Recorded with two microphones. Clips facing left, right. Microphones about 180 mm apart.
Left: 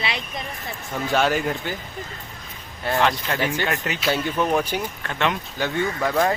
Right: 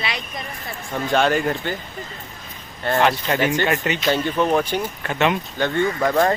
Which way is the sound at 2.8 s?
Centre (ahead or behind).